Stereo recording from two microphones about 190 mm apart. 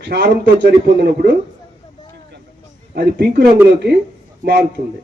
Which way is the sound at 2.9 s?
60° right (ahead or behind).